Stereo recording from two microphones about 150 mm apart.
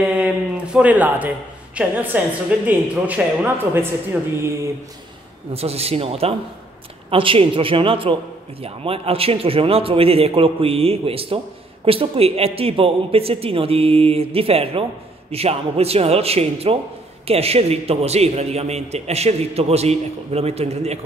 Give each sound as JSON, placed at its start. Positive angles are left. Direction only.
{"t": 0.0, "sound": "a woman's voice", "side_deg": -10}
{"t": 5.5, "sound": "a man's voice", "side_deg": -40}